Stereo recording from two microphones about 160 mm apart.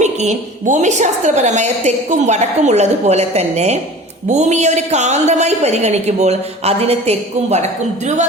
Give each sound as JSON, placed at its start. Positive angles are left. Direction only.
{"t": 0.0, "sound": "a woman's voice", "side_deg": -50}